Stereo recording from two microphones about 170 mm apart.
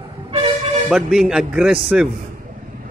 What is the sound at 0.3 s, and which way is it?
Music, 40° right (ahead or behind).